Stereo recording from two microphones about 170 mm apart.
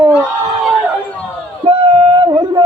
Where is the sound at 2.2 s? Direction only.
25° right (ahead or behind).